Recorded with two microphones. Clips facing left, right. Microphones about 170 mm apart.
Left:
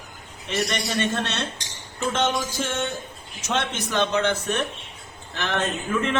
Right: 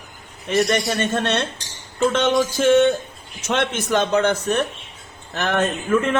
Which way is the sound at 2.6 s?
70° right (ahead or behind).